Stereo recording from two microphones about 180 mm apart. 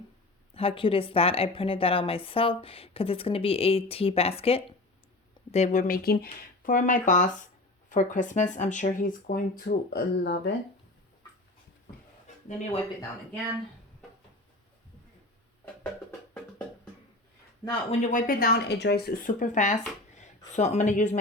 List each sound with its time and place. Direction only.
0.5 s speech: 30° left (ahead or behind); by 6.2 s 55° left (ahead or behind)
6.6 s speech: 45° left (ahead or behind); by 10.5 s 65° left (ahead or behind)
12.5 s speech: 40° left (ahead or behind)
17.6 s speech: 20° left (ahead or behind)
18.0 s a woman's voice: 45° left (ahead or behind)